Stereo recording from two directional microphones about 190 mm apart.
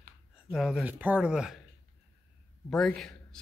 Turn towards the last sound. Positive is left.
turn(degrees=5)  # may be behind; listen again after turning